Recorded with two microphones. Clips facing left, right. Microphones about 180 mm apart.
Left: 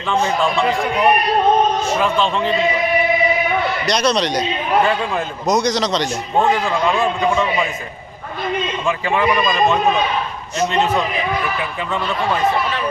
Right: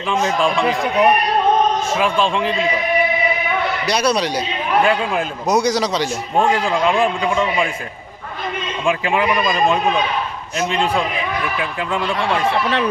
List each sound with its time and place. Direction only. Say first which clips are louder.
0.4 s a man's voice: even; 15° right (ahead or behind)
2.0 s a man's voice: even; 10° right (ahead or behind)
3.8 s a man's voice: right 1 dB; 10° right (ahead or behind)
8.8 s a man's voice: right 2 dB; 15° right (ahead or behind)
12.2 s speech: left 2 dB; 75° right (ahead or behind)